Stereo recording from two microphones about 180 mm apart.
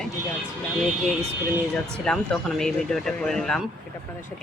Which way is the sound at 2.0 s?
Centre (ahead or behind).